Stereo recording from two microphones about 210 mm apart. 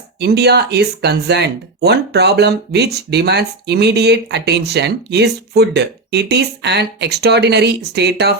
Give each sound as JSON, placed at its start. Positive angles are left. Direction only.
{"t": 0.2, "sound": "speech", "side_deg": -50}